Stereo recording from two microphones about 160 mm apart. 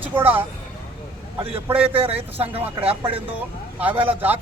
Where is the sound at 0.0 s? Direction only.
10° right (ahead or behind).